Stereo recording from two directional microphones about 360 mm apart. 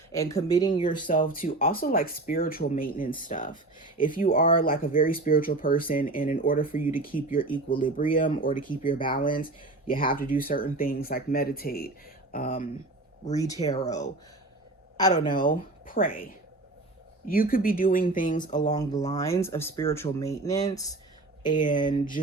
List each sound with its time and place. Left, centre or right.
0.1 s speech: centre
0.9 s speech: left
13.2 s speech: centre